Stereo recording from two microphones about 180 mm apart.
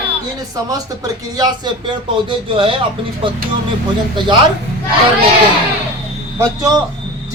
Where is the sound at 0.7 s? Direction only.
20° right (ahead or behind).